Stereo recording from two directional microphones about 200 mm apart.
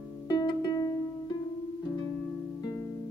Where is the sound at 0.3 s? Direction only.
20° left (ahead or behind).